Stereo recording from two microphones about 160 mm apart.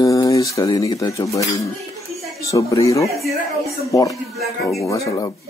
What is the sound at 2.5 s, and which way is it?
Speech, 20° left (ahead or behind).